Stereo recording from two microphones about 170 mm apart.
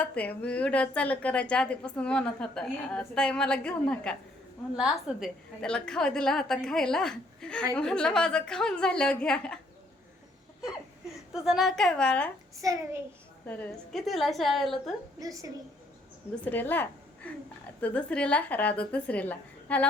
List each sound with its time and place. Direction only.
0.0 s a woman's voice: 10° left (ahead or behind)
11.4 s a woman's voice: centre (ahead or behind)
12.6 s a child's voice: 20° right (ahead or behind)
13.5 s a woman's voice: 5° left (ahead or behind)
15.2 s a child's voice: 20° right (ahead or behind)
16.3 s a woman's voice: 10° left (ahead or behind)